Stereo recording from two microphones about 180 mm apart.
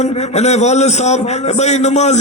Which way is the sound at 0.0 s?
40° left (ahead or behind).